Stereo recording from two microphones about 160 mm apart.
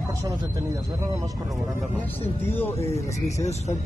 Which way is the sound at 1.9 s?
10° left (ahead or behind).